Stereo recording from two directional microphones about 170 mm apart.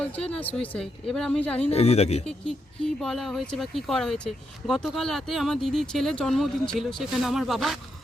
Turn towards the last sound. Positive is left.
turn(degrees=0)  # may be behind; listen again after turning